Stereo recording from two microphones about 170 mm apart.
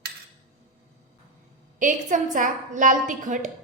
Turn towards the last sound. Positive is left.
turn(degrees=-50)  # may be behind; listen again after turning